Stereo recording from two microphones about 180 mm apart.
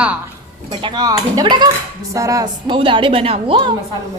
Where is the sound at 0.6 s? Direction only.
25° right (ahead or behind).